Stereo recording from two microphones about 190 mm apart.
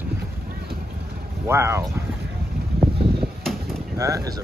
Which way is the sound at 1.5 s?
15° right (ahead or behind).